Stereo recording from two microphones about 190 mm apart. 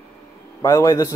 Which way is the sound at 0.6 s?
15° left (ahead or behind).